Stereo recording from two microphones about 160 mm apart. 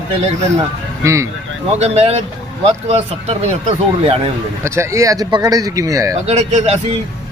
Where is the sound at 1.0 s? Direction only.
20° right (ahead or behind).